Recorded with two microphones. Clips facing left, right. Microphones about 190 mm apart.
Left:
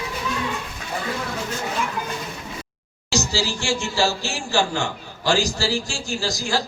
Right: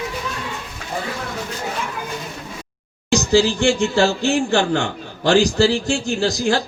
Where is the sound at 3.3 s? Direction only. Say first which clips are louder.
Right 9 dB; 55° right (ahead or behind).